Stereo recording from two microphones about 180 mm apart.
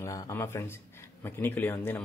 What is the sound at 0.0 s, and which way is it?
A man's voice, 15° left (ahead or behind).